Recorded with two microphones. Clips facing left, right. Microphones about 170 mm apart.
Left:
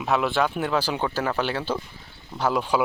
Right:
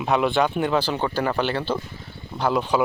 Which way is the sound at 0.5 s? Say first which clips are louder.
Right 3 dB; centre (ahead or behind).